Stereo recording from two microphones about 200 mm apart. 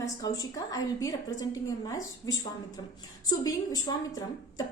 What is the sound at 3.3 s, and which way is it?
A woman's voice, 20° left (ahead or behind).